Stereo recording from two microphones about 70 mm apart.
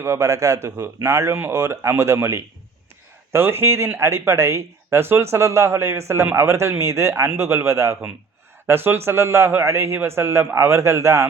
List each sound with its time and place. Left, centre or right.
0.0 s speech: right
8.6 s speech: right